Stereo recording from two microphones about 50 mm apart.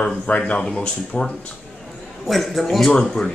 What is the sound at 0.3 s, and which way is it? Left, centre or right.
Speech, left.